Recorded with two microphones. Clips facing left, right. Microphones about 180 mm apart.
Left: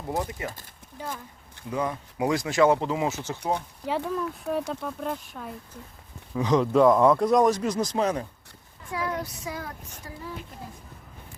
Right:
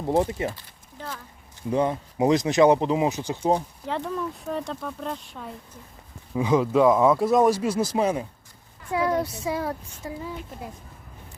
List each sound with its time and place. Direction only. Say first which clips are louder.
0.1 s speech: right 7 dB; 30° right (ahead or behind)
0.9 s speech: left 1 dB; 10° left (ahead or behind)
1.7 s speech: right 5 dB; 25° right (ahead or behind)
3.8 s speech: left 4 dB; 5° left (ahead or behind)
6.3 s speech: right 1 dB; 10° right (ahead or behind)
8.9 s speech: right 7 dB; 30° right (ahead or behind)